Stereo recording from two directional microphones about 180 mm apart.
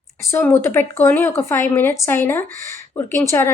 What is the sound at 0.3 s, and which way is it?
A woman's voice, 15° left (ahead or behind).